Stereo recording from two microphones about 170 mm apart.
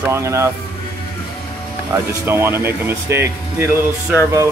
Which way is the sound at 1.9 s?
15° right (ahead or behind).